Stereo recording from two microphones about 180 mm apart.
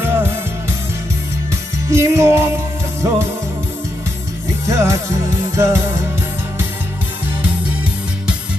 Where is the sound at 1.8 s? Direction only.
15° right (ahead or behind).